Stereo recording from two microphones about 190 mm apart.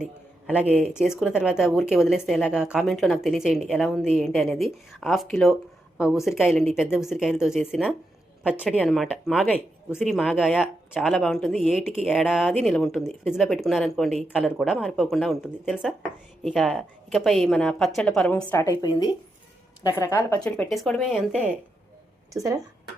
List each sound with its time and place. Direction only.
0.5 s a woman's voice: 5° right (ahead or behind)
22.3 s speech: 15° right (ahead or behind)